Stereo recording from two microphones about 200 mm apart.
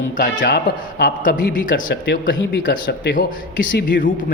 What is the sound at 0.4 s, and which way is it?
A man's voice, 55° left (ahead or behind).